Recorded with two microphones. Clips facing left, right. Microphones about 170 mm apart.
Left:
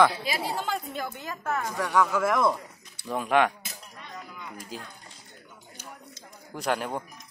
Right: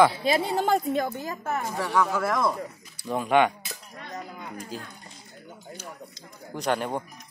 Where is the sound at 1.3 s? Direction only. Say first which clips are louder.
Right 1 dB; 25° right (ahead or behind).